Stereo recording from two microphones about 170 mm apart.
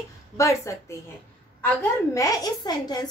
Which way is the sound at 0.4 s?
15° left (ahead or behind).